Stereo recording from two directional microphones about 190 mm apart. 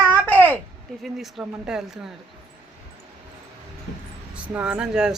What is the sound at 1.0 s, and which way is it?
Speech, centre (ahead or behind).